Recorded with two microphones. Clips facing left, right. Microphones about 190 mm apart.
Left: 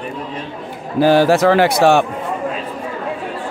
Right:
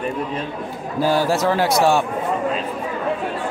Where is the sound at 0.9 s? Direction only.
75° left (ahead or behind).